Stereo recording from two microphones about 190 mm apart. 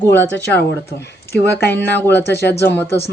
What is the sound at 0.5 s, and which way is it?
Speech, 60° left (ahead or behind).